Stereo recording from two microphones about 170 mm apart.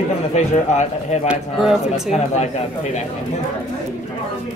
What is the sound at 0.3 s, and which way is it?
Speech, 40° left (ahead or behind).